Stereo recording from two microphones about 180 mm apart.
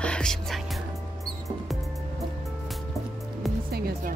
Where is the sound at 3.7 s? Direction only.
60° right (ahead or behind).